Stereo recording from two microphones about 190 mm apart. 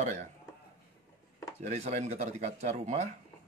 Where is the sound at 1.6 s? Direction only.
40° right (ahead or behind).